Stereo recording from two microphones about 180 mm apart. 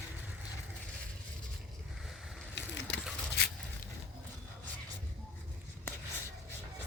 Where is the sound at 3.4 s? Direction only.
65° left (ahead or behind).